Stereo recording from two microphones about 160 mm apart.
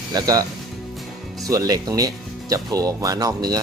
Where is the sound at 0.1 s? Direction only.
25° right (ahead or behind).